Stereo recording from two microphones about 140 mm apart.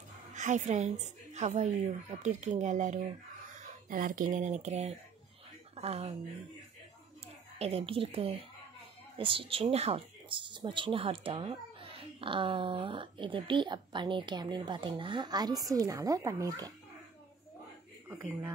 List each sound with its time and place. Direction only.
0.3 s a woman's voice: 60° right (ahead or behind)
3.9 s a woman's voice: 75° right (ahead or behind); by 6.1 s 45° right (ahead or behind)
7.5 s a woman's voice: 45° right (ahead or behind); by 16.7 s 25° right (ahead or behind)
18.0 s speech: 15° right (ahead or behind)